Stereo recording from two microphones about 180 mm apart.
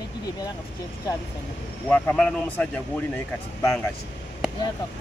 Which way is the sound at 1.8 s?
10° left (ahead or behind).